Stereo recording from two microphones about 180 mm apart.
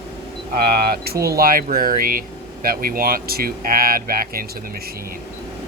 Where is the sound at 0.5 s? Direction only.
60° right (ahead or behind).